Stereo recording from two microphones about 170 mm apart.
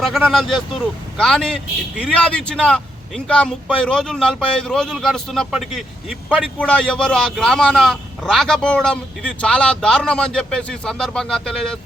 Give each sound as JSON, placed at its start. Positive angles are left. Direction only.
{"t": 0.0, "sound": "speech", "side_deg": 0}